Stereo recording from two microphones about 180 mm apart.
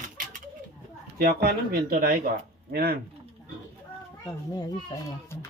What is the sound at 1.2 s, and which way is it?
Speech, 55° right (ahead or behind).